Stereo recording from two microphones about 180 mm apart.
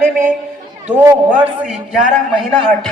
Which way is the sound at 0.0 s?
45° right (ahead or behind).